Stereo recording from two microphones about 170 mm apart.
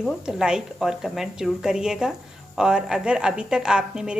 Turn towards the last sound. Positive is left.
turn(degrees=-5)  # may be behind; listen again after turning